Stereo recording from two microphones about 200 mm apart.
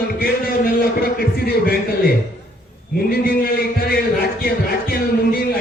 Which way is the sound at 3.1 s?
50° left (ahead or behind).